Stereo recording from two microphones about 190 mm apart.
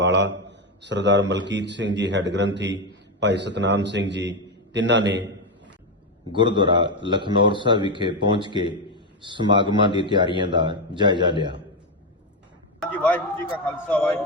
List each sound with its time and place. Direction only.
0.0 s a man's voice: 70° right (ahead or behind)
6.3 s a man's voice: 25° right (ahead or behind)
12.8 s a man's voice: 10° left (ahead or behind)